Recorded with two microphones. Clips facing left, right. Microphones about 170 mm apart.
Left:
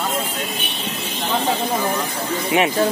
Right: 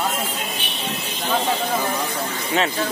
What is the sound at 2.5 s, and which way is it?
Speech, 15° left (ahead or behind).